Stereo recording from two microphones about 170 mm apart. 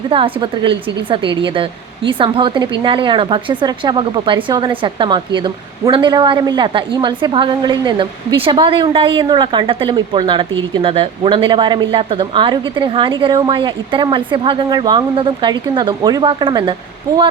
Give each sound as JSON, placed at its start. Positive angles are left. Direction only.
{"t": 0.1, "sound": "a woman's voice", "side_deg": -30}